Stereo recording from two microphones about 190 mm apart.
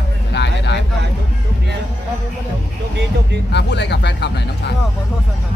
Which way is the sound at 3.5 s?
65° left (ahead or behind).